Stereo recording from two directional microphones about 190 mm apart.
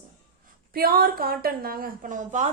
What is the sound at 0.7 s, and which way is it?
A woman's voice, 50° right (ahead or behind).